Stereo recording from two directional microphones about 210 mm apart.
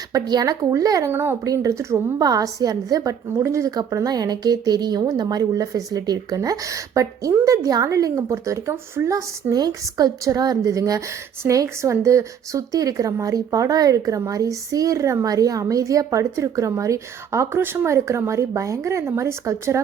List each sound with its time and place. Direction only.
0.1 s speech: 20° right (ahead or behind)